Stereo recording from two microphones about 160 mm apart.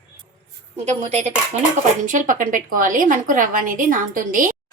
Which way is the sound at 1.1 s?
45° right (ahead or behind).